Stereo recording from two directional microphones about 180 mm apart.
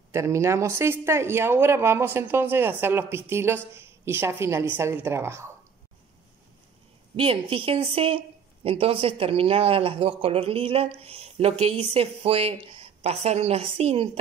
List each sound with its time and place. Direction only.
0.1 s speech: 15° right (ahead or behind)
7.2 s speech: 30° right (ahead or behind)